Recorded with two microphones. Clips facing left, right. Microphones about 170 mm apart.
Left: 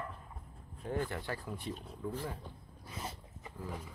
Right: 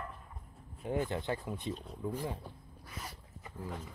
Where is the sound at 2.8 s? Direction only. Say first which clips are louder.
Left 3 dB; 25° left (ahead or behind).